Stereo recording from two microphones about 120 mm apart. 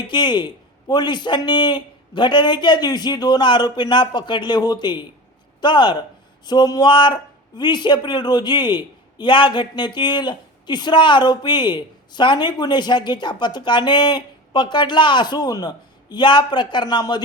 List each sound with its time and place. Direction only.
0.1 s speech: 40° left (ahead or behind)